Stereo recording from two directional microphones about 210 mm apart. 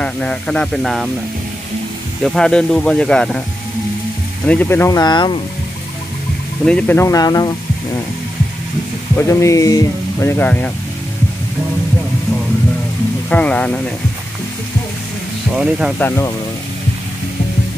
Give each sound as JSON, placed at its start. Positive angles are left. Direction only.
{"t": 0.0, "sound": "speech", "side_deg": 5}
{"t": 2.2, "sound": "speech", "side_deg": 0}
{"t": 4.5, "sound": "speech", "side_deg": 10}
{"t": 6.6, "sound": "speech", "side_deg": 5}
{"t": 9.1, "sound": "speech", "side_deg": 15}
{"t": 13.3, "sound": "speech", "side_deg": 5}
{"t": 15.5, "sound": "speech", "side_deg": -5}
{"t": 16.0, "sound": "speech", "side_deg": 10}